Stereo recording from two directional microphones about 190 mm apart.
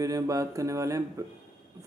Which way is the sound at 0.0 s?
20° right (ahead or behind).